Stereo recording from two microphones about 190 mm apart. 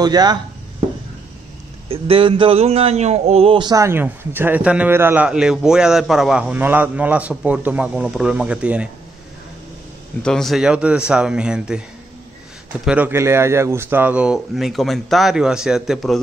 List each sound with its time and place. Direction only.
0.0 s speech: 20° right (ahead or behind)
1.9 s speech: 30° right (ahead or behind); by 8.8 s 5° right (ahead or behind)
10.2 s a man's voice: centre (ahead or behind)
12.8 s a man's voice: 5° right (ahead or behind)